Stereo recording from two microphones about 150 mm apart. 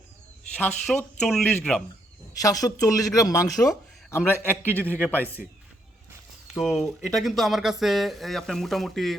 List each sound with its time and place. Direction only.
0.5 s speech: 10° left (ahead or behind)
2.4 s a man's voice: 25° left (ahead or behind)
6.6 s speech: centre (ahead or behind)